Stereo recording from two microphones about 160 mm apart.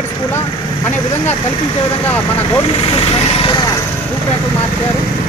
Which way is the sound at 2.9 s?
35° left (ahead or behind).